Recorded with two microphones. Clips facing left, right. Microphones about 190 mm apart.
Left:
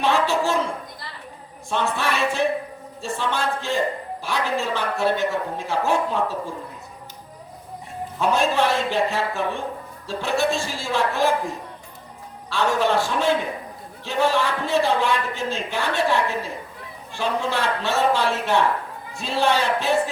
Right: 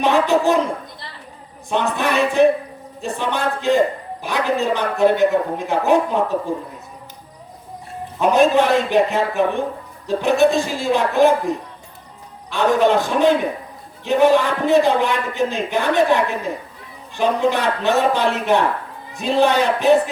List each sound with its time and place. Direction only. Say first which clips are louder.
0.0 s speech: right 5 dB; 15° right (ahead or behind)
1.7 s a man's voice: right 5 dB; 15° right (ahead or behind)
8.2 s a man's voice: right 6 dB; 15° right (ahead or behind)